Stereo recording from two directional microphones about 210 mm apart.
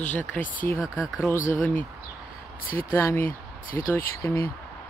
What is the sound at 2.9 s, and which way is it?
Speech, 10° left (ahead or behind).